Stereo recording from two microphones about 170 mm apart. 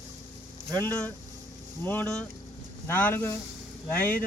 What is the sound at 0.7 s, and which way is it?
Speech, 20° right (ahead or behind).